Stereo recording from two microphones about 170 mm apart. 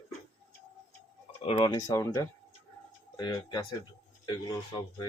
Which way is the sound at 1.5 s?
30° left (ahead or behind).